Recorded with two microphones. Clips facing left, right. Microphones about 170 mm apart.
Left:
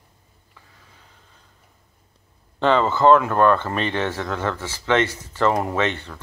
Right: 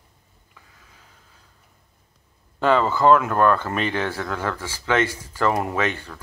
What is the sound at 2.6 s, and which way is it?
Speech, 5° right (ahead or behind).